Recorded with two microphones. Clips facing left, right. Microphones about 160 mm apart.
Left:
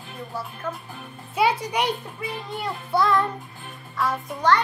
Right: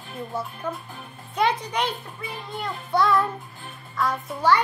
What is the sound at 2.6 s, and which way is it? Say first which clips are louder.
Child singing: even; 5° left (ahead or behind).